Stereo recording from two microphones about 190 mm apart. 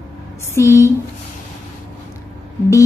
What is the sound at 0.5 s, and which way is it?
Speech, 15° left (ahead or behind).